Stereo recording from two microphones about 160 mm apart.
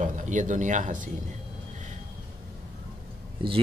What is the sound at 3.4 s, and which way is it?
Speech, 35° right (ahead or behind).